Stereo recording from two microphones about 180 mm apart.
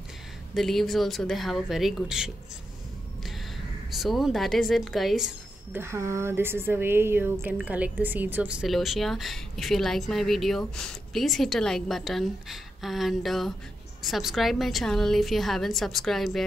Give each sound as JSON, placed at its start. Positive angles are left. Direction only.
{"t": 0.6, "sound": "speech", "side_deg": 0}
{"t": 3.3, "sound": "a sound", "side_deg": 0}
{"t": 5.8, "sound": "speech", "side_deg": -15}